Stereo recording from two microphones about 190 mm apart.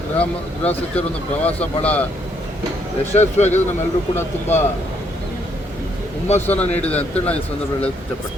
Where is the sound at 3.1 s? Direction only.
35° left (ahead or behind).